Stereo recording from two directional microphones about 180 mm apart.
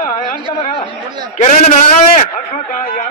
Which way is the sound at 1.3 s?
45° left (ahead or behind).